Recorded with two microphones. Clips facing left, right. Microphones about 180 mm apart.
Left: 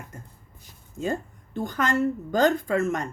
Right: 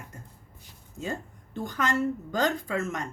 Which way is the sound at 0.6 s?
50° left (ahead or behind).